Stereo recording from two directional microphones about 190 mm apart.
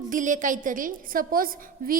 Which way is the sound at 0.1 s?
40° right (ahead or behind).